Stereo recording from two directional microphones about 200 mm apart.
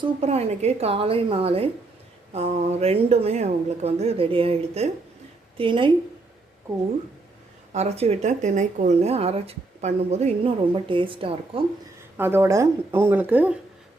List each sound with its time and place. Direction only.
0.0 s a woman's voice: 30° right (ahead or behind)
7.7 s speech: 35° right (ahead or behind)
12.1 s speech: 10° right (ahead or behind)